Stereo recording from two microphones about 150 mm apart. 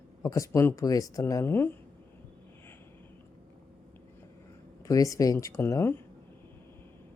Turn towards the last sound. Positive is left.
turn(degrees=15)  # may be behind; listen again after turning